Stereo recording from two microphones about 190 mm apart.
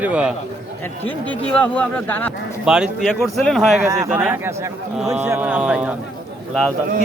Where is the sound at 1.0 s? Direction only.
10° left (ahead or behind).